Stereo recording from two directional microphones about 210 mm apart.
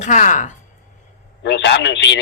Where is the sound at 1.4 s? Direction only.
55° left (ahead or behind).